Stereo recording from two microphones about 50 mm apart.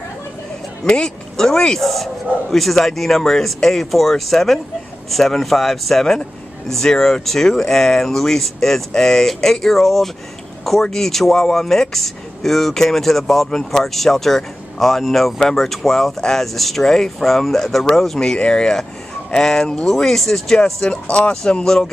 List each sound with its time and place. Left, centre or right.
0.8 s speech: centre
21.6 s speech: centre